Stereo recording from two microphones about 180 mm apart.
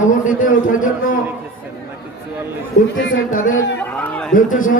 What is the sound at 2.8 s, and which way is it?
Speech, 50° left (ahead or behind).